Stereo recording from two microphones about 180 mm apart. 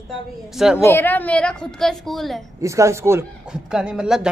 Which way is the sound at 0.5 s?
5° right (ahead or behind).